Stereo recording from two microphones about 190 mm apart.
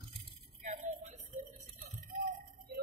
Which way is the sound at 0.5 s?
40° right (ahead or behind).